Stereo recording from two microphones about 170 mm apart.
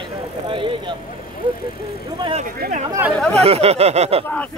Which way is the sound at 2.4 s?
55° right (ahead or behind).